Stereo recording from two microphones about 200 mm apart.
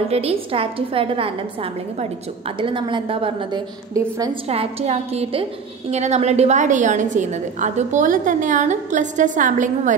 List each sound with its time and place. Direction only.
0.1 s a woman's voice: 30° right (ahead or behind)
4.5 s a woman's voice: 30° right (ahead or behind)